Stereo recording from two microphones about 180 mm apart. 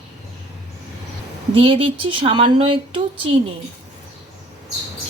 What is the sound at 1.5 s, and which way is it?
A woman's voice, 30° right (ahead or behind).